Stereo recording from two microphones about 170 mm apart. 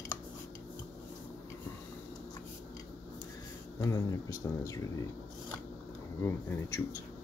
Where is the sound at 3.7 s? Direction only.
20° left (ahead or behind).